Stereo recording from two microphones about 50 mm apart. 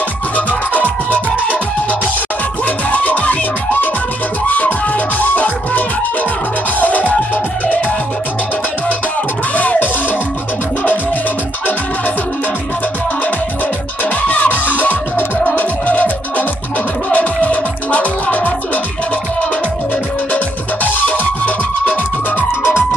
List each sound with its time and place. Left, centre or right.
0.5 s music: left
9.6 s music: left
14.2 s music: left
20.3 s music: left
22.6 s music: left